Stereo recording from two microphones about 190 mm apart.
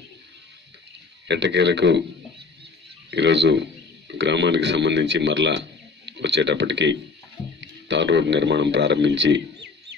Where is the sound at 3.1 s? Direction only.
65° right (ahead or behind).